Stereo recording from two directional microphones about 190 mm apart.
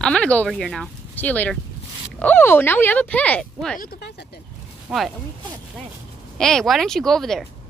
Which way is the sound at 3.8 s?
55° left (ahead or behind).